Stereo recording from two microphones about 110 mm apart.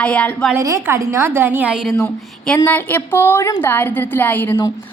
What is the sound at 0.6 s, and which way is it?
A woman's voice, 25° right (ahead or behind).